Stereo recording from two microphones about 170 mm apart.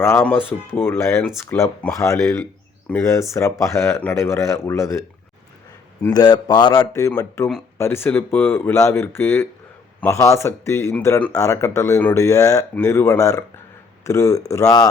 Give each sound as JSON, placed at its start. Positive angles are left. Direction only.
{"t": 0.0, "sound": "a man's voice", "side_deg": 15}